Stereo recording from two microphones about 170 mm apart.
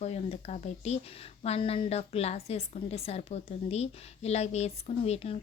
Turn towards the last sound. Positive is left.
turn(degrees=35)  # may be behind; listen again after turning